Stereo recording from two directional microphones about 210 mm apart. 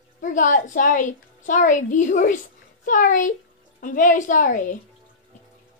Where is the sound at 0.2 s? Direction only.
40° left (ahead or behind).